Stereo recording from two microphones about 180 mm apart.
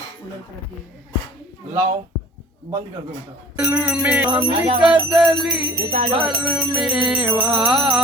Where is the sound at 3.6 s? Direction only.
5° right (ahead or behind).